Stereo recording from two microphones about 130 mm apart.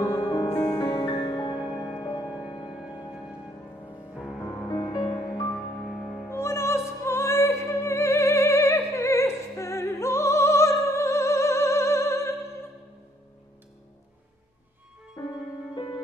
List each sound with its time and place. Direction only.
0.0 s music: 30° left (ahead or behind)
1.0 s music: 40° left (ahead or behind)
4.6 s music: 30° left (ahead or behind)
6.2 s music: 20° left (ahead or behind)
15.2 s music: 30° left (ahead or behind)
15.7 s music: 40° left (ahead or behind)